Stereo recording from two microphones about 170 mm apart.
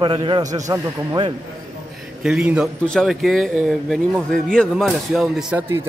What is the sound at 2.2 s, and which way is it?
Speech, 5° right (ahead or behind).